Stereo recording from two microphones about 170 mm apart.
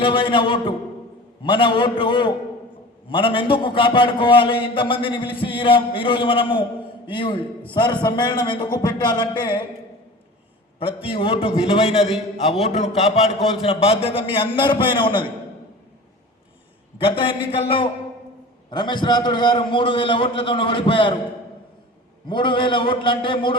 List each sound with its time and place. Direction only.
0.0 s a man's voice: 30° left (ahead or behind)
10.8 s a man's voice: 30° left (ahead or behind)
17.0 s a man's voice: 30° left (ahead or behind)
22.3 s a man's voice: 30° left (ahead or behind)